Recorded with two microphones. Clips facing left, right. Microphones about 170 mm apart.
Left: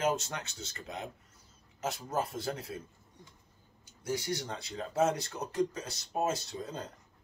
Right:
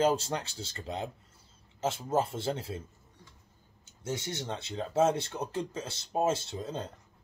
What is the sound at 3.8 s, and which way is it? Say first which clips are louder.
Speech: left 2 dB; 25° right (ahead or behind).